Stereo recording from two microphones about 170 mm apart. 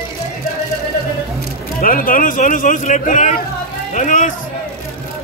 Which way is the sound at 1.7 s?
55° left (ahead or behind).